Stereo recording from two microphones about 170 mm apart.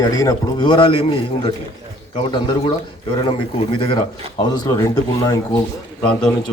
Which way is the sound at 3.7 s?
30° left (ahead or behind).